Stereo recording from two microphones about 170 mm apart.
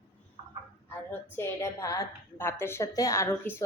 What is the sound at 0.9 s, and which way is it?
A woman's voice, 15° left (ahead or behind).